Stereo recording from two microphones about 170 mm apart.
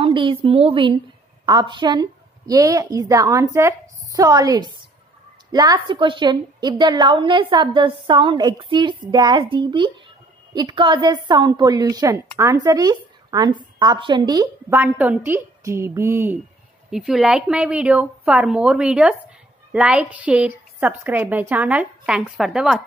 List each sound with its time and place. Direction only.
0.0 s a woman's voice: 30° right (ahead or behind)
14.8 s a woman's voice: 10° right (ahead or behind)
16.9 s a woman's voice: centre (ahead or behind)